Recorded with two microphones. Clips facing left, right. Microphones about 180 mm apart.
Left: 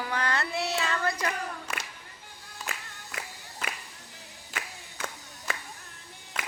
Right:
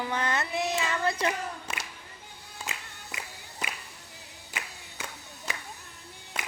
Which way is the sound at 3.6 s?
15° right (ahead or behind).